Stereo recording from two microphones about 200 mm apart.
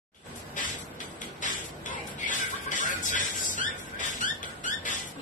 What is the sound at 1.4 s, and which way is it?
Music, 40° left (ahead or behind).